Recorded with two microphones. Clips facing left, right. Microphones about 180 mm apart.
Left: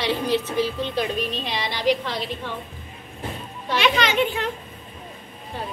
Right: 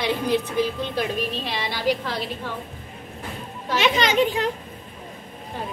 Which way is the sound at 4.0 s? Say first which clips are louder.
Right 2 dB; 40° right (ahead or behind).